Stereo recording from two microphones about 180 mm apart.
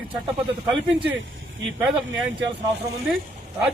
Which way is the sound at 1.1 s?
90° right.